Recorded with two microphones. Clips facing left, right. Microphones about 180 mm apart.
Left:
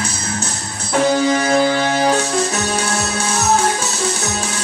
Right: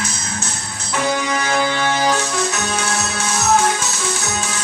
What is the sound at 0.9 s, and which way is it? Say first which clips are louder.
Music: left 6 dB; 35° left (ahead or behind).